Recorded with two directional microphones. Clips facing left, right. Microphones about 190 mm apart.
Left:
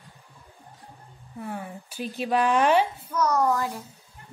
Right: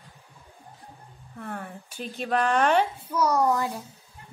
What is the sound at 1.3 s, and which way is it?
A woman's voice, 5° left (ahead or behind).